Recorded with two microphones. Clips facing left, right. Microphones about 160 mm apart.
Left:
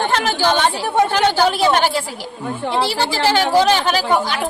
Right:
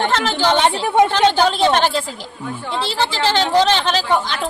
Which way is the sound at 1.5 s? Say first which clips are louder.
Even; 10° left (ahead or behind).